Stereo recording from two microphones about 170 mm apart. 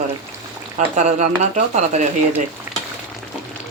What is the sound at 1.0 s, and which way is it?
Speech, 45° right (ahead or behind).